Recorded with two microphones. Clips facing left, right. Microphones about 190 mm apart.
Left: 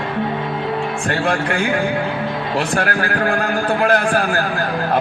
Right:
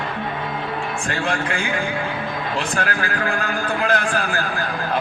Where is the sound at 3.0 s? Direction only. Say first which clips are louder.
Left 5 dB; 40° left (ahead or behind).